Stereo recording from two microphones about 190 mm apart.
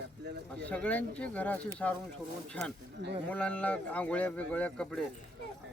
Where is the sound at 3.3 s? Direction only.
5° left (ahead or behind).